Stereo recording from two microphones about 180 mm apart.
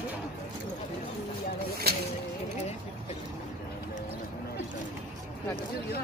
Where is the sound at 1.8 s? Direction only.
60° right (ahead or behind).